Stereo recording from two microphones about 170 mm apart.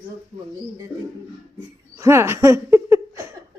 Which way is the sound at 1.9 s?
15° right (ahead or behind).